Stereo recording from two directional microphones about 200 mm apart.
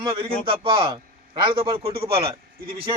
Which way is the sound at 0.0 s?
25° right (ahead or behind).